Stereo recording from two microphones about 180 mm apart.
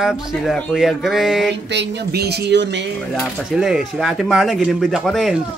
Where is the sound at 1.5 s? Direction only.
75° right (ahead or behind).